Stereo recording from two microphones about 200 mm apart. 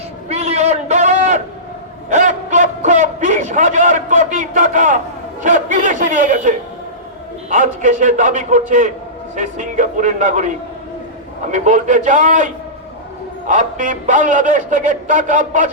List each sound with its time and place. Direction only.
0.3 s a sound: 30° right (ahead or behind)
7.5 s a man's voice: 40° right (ahead or behind)
11.5 s a man's voice: 40° right (ahead or behind)
13.5 s a man's voice: 40° right (ahead or behind)